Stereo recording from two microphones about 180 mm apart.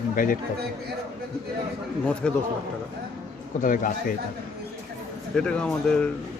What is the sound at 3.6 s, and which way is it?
Speech, 45° left (ahead or behind).